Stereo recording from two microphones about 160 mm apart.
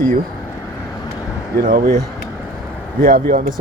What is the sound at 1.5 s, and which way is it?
Speech, 65° right (ahead or behind).